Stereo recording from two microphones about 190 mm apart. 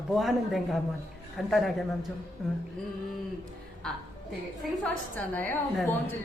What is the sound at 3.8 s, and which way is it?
A man's voice, 5° left (ahead or behind).